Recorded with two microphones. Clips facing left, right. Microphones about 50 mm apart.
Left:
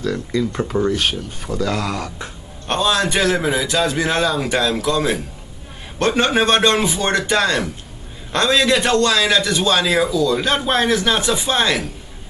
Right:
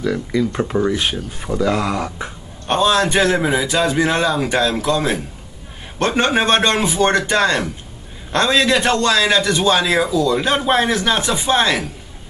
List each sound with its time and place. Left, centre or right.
0.0 s speech: centre
6.2 s speech: centre